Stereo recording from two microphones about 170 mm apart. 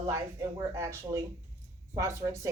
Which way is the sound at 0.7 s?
15° right (ahead or behind).